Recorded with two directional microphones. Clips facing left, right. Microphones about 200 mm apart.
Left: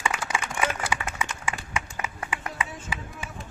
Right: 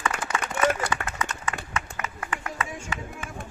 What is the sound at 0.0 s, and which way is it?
Clapping, 10° left (ahead or behind).